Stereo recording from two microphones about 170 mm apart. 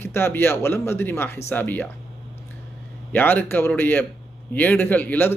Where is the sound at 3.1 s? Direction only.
10° left (ahead or behind).